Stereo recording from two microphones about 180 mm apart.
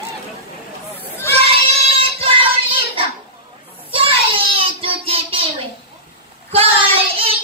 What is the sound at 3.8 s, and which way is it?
Child singing, 30° right (ahead or behind).